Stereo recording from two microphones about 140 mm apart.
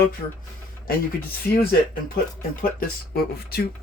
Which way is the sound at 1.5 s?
90° left.